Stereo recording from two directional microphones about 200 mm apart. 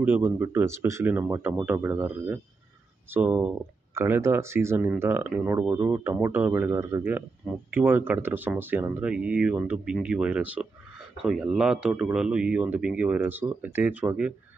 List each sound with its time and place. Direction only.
0.0 s speech: 10° right (ahead or behind)